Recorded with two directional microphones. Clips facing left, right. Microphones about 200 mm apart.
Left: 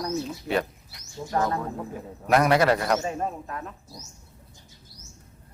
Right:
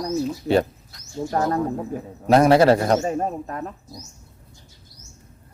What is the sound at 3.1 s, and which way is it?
Speech, 40° right (ahead or behind).